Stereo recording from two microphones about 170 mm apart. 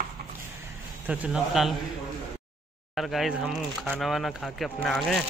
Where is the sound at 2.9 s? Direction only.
Centre (ahead or behind).